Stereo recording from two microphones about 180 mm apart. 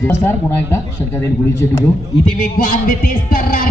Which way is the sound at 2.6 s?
50° left (ahead or behind).